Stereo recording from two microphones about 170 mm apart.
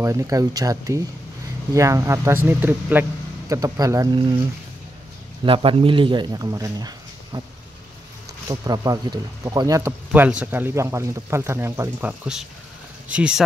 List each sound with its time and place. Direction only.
0.0 s a man's voice: 20° right (ahead or behind)
5.4 s a man's voice: 30° right (ahead or behind); by 13.4 s 5° right (ahead or behind)